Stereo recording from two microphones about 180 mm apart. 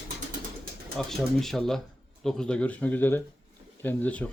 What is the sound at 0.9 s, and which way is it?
Speech, centre (ahead or behind).